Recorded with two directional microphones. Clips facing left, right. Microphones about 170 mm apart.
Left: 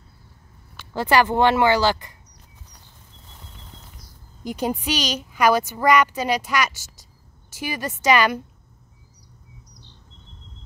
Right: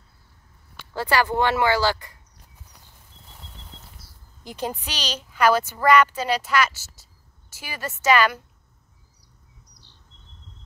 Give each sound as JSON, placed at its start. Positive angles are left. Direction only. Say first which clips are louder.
{"t": 0.9, "sound": "speech", "louder": "left 3 dB", "side_deg": 20}
{"t": 4.0, "sound": "speech", "louder": "left 15 dB", "side_deg": 15}